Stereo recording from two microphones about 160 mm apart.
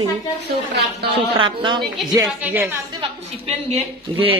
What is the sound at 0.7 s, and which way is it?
Speech, 90° right.